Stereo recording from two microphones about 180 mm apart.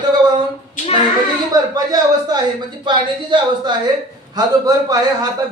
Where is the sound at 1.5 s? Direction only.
20° right (ahead or behind).